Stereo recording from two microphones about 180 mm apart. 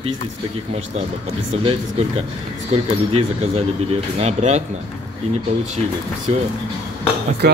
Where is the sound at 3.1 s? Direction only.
35° right (ahead or behind).